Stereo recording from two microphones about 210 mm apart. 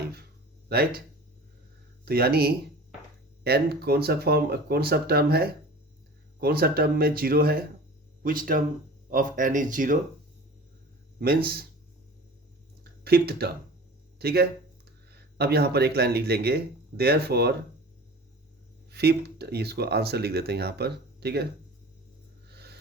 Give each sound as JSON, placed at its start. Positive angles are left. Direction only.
{"t": 0.7, "sound": "speech", "side_deg": -45}
{"t": 2.0, "sound": "speech", "side_deg": -50}
{"t": 11.2, "sound": "speech", "side_deg": -45}
{"t": 12.8, "sound": "a sound", "side_deg": -50}
{"t": 14.2, "sound": "speech", "side_deg": -50}
{"t": 18.9, "sound": "speech", "side_deg": -50}
{"t": 22.4, "sound": "a sound", "side_deg": -50}